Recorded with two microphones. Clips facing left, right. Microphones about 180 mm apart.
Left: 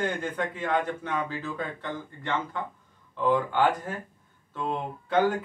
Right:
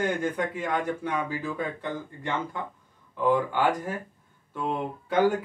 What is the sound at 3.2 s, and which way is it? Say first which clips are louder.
Speech: even; 10° right (ahead or behind).